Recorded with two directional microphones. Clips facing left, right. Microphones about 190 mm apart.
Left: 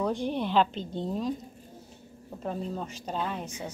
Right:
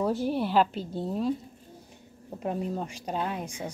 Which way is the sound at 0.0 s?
5° right (ahead or behind).